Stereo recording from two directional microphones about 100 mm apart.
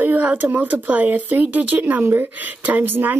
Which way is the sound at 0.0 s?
15° right (ahead or behind).